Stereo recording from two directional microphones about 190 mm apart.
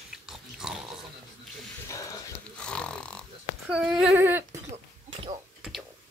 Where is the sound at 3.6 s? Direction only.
5° right (ahead or behind).